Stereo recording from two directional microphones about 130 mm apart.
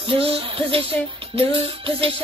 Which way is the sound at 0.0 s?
45° right (ahead or behind).